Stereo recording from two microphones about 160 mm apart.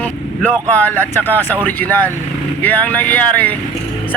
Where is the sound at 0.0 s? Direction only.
10° left (ahead or behind).